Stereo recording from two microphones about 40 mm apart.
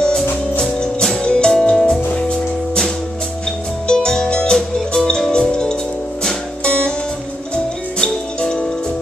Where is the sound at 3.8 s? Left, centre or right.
Centre.